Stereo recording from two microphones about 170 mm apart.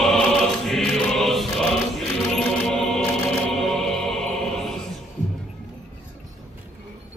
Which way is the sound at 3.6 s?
5° left (ahead or behind).